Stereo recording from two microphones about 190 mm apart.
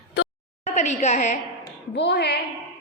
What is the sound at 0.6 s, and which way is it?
Speech, 35° left (ahead or behind).